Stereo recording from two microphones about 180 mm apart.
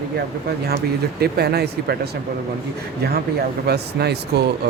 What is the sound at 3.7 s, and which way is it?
Speech, 65° right (ahead or behind).